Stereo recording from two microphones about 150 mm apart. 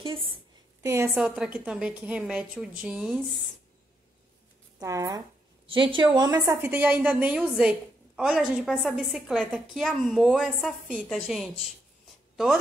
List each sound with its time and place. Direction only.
0.0 s a woman's voice: 35° right (ahead or behind)
0.8 s a woman's voice: 20° right (ahead or behind)
1.1 s a woman's voice: 5° right (ahead or behind)
4.7 s speech: 20° right (ahead or behind)
5.7 s a woman's voice: 35° right (ahead or behind); by 11.5 s centre (ahead or behind)